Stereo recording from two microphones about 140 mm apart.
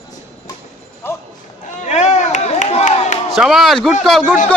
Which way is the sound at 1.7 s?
55° left (ahead or behind).